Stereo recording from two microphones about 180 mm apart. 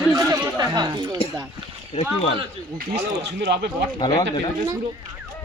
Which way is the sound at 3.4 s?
65° right (ahead or behind).